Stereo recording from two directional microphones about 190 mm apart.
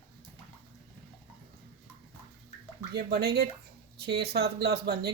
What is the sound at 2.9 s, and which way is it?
Speech, 55° right (ahead or behind).